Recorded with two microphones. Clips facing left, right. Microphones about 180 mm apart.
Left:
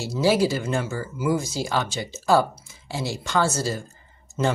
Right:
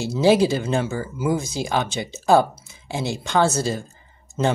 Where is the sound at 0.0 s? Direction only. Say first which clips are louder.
Right 4 dB; 20° right (ahead or behind).